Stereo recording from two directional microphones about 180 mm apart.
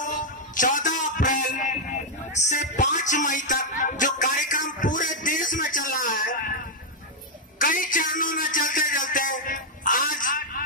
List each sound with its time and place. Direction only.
0.0 s music: 45° left (ahead or behind)
7.5 s a man's voice: 50° left (ahead or behind)